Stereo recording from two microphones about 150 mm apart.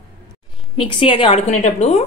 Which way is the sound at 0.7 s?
35° left (ahead or behind).